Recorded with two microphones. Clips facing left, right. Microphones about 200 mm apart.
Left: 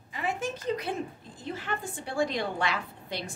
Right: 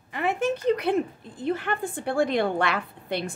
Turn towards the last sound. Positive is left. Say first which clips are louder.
# right 7 dB
turn(degrees=-60)  # may be behind; listen again after turning